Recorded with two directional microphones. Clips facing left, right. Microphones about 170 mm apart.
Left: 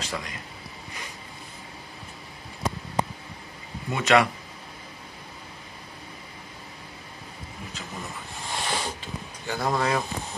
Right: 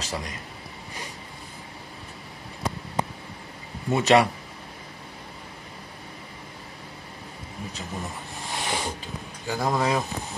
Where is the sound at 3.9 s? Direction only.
35° right (ahead or behind).